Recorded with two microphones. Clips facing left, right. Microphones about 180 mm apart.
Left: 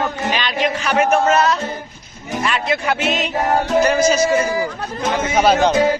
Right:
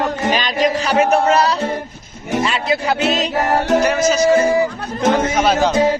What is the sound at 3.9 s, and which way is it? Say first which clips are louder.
Music: left 1 dB; centre (ahead or behind).